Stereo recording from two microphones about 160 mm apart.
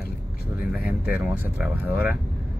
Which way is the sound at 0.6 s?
10° right (ahead or behind).